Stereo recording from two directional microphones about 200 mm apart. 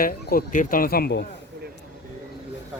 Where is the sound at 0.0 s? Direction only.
45° left (ahead or behind).